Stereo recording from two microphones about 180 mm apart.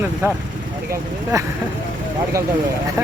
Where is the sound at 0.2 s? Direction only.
15° right (ahead or behind).